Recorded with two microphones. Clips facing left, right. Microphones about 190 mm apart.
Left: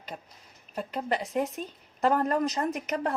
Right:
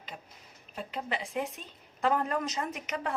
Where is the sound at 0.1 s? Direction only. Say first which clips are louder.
Left 5 dB; 40° left (ahead or behind).